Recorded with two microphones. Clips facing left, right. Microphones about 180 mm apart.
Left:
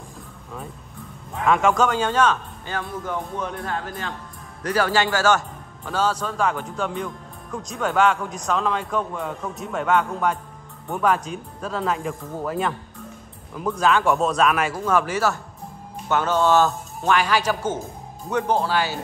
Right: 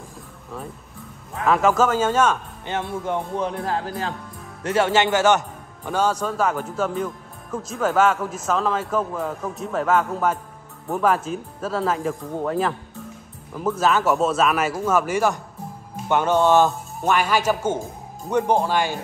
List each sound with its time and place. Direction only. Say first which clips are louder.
1.3 s a man's voice: right 1 dB; centre (ahead or behind)
2.6 s speech: right 3 dB; 25° right (ahead or behind)
4.6 s a man's voice: right 2 dB; 25° right (ahead or behind)